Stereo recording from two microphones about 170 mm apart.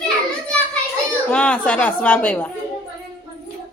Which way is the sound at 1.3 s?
5° left (ahead or behind).